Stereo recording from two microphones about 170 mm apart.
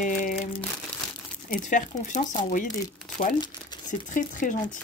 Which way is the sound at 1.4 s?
50° left (ahead or behind).